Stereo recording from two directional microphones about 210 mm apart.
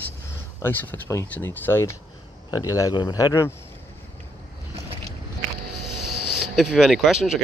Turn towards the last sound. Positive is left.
turn(degrees=-5)  # may be behind; listen again after turning